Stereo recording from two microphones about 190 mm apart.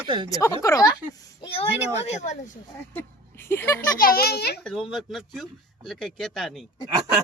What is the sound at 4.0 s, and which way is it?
Speech, 50° left (ahead or behind).